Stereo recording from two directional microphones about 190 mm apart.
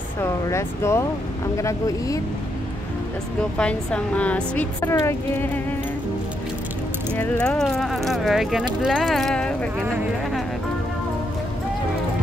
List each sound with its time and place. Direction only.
0.2 s a woman's voice: 15° left (ahead or behind)
3.5 s a woman's voice: 5° left (ahead or behind)
7.2 s speech: 5° left (ahead or behind)